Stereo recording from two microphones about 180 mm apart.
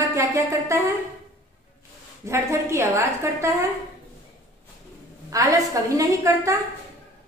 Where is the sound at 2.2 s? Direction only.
15° right (ahead or behind).